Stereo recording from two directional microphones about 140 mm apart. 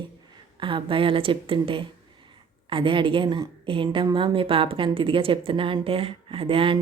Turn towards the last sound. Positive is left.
turn(degrees=-40)  # may be behind; listen again after turning